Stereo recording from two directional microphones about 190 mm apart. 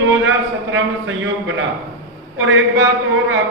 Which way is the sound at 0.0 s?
85° right.